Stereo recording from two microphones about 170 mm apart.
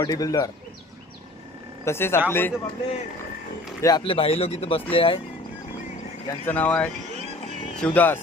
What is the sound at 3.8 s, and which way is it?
Speech, 30° left (ahead or behind).